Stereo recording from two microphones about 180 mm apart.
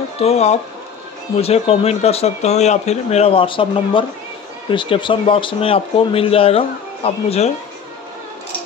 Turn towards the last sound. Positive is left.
turn(degrees=35)  # may be behind; listen again after turning